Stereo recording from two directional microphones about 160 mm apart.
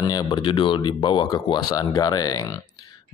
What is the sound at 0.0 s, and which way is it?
Speech, 25° left (ahead or behind).